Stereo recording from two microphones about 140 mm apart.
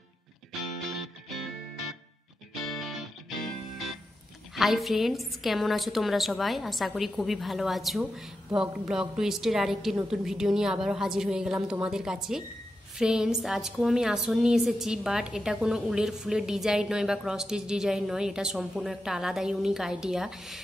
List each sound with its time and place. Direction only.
2.6 s music: centre (ahead or behind)
4.6 s a woman's voice: centre (ahead or behind)